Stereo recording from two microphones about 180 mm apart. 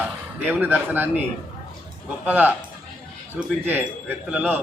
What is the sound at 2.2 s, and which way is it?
A man's voice, 10° right (ahead or behind).